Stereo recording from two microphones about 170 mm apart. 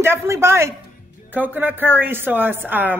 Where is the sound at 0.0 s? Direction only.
15° right (ahead or behind).